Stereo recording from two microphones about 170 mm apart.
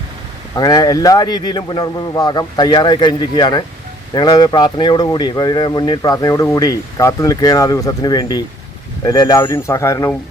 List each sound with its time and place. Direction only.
0.5 s speech: 20° left (ahead or behind)